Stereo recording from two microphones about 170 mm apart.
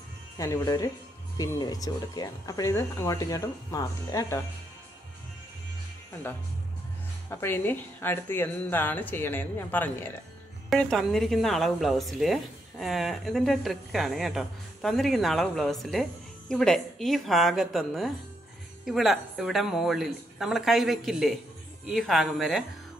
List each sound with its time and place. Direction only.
0.4 s speech: 20° left (ahead or behind)
7.2 s a woman's voice: 15° left (ahead or behind)